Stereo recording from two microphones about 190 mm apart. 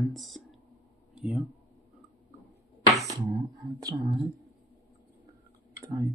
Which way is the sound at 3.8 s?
15° right (ahead or behind).